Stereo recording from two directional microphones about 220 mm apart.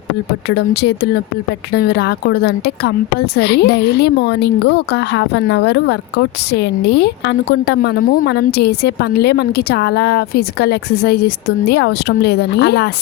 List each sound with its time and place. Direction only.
0.4 s a woman's voice: 50° left (ahead or behind)